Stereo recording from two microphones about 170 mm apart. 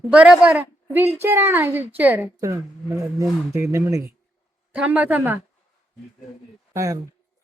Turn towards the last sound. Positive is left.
turn(degrees=-20)  # may be behind; listen again after turning